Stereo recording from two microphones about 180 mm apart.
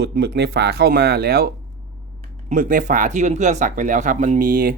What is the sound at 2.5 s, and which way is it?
Speech, 50° right (ahead or behind).